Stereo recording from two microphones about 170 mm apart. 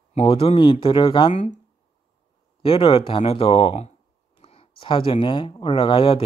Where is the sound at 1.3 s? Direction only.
45° left (ahead or behind).